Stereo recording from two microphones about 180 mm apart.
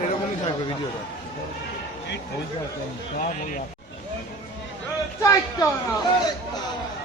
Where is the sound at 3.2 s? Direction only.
50° left (ahead or behind).